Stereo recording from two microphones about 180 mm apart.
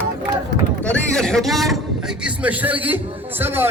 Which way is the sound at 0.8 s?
5° left (ahead or behind).